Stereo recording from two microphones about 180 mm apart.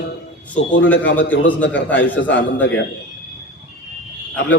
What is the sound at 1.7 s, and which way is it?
Speech, 90° left.